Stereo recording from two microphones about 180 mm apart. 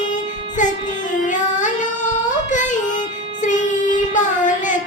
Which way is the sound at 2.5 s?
45° left (ahead or behind).